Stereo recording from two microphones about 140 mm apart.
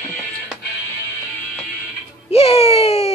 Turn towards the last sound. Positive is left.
turn(degrees=45)  # may be behind; listen again after turning